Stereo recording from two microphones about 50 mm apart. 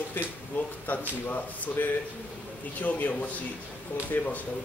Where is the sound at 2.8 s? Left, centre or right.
Left.